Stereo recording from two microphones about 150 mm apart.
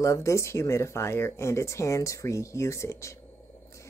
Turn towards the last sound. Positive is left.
turn(degrees=20)  # may be behind; listen again after turning